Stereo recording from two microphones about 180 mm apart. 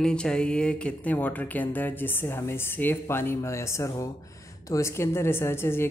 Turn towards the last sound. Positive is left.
turn(degrees=15)  # may be behind; listen again after turning